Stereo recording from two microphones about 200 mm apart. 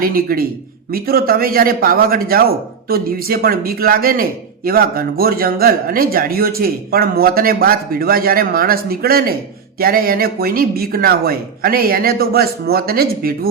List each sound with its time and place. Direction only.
0.0 s a man's voice: 45° right (ahead or behind)